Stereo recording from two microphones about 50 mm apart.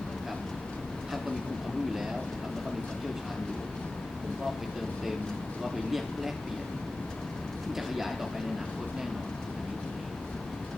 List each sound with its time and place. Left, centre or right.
5.6 s speech: centre
7.8 s speech: centre